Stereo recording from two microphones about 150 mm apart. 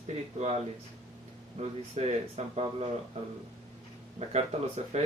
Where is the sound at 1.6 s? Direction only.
45° right (ahead or behind).